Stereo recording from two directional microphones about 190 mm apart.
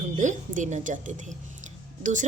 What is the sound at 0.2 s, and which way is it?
A woman's voice, 40° right (ahead or behind).